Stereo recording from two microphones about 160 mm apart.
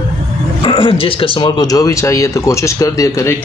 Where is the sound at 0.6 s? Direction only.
30° left (ahead or behind).